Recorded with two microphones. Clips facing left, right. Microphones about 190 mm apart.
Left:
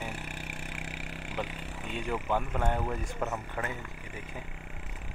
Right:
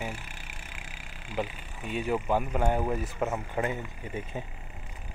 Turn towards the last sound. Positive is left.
turn(degrees=-20)  # may be behind; listen again after turning